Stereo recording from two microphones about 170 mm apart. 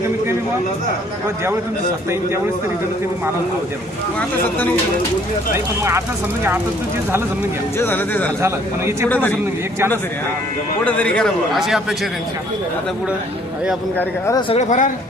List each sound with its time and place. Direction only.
7.8 s speech: 10° left (ahead or behind)
10.8 s a man's voice: 10° left (ahead or behind)
14.5 s speech: 45° left (ahead or behind)